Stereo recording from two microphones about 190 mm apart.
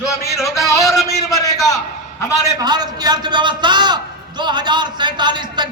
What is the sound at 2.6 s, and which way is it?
A man's voice, 20° right (ahead or behind).